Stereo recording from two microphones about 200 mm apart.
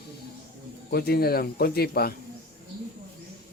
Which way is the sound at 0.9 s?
50° left (ahead or behind).